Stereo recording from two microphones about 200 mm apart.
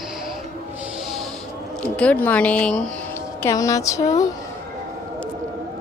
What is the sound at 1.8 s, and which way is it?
Speech, 5° left (ahead or behind).